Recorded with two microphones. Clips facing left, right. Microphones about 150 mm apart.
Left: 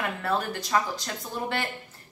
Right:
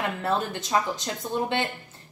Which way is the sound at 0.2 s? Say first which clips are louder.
Right 1 dB; 20° right (ahead or behind).